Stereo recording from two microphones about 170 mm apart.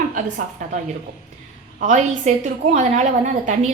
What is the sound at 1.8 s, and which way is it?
A woman's voice, 45° right (ahead or behind).